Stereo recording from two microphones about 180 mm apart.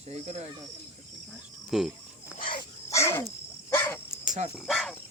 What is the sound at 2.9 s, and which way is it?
Speech, 15° left (ahead or behind).